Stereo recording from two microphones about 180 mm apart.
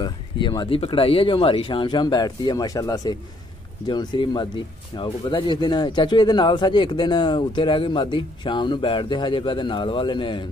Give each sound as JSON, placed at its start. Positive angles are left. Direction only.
{"t": 0.0, "sound": "speech", "side_deg": 25}